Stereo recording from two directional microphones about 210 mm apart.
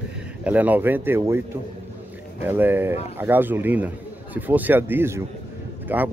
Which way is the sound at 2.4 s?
10° right (ahead or behind).